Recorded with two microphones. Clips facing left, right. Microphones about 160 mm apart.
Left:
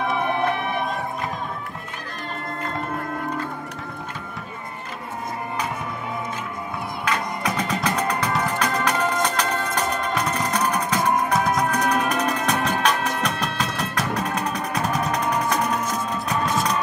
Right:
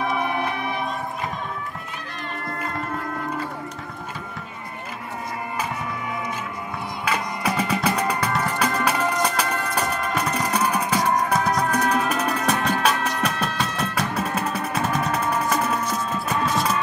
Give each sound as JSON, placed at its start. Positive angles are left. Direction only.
{"t": 7.1, "sound": "music", "side_deg": -5}